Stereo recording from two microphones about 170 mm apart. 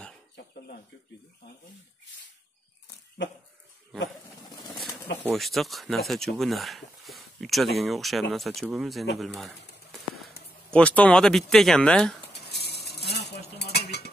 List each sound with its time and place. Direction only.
5.3 s speech: centre (ahead or behind)
10.7 s speech: 5° left (ahead or behind)
12.3 s cutlery: 75° left (ahead or behind)